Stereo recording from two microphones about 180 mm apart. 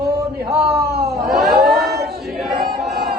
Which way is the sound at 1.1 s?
Centre (ahead or behind).